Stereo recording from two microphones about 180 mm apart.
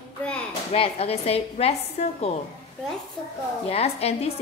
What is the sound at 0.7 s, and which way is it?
A woman's voice, 30° left (ahead or behind).